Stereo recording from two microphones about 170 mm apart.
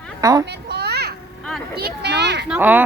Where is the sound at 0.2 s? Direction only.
20° right (ahead or behind).